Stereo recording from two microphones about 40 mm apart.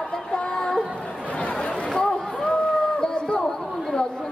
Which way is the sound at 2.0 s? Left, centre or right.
Left.